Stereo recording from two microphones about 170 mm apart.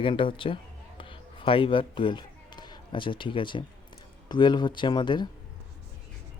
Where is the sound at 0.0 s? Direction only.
30° left (ahead or behind).